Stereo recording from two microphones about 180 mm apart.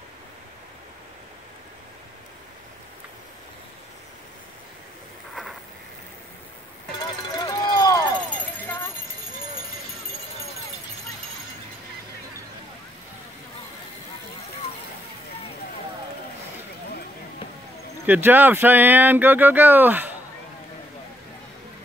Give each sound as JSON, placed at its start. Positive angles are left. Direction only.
{"t": 7.3, "sound": "run", "side_deg": 20}
{"t": 18.0, "sound": "speech", "side_deg": -10}